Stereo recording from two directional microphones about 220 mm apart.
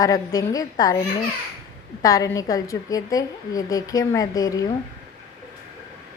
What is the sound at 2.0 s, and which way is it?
A woman's voice, 15° left (ahead or behind).